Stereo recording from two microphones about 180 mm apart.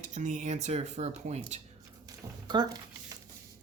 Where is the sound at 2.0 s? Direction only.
20° right (ahead or behind).